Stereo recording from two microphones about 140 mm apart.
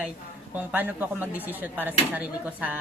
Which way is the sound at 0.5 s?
10° right (ahead or behind).